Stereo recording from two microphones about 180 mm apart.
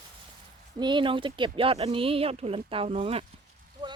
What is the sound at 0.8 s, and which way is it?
Speech, 25° right (ahead or behind).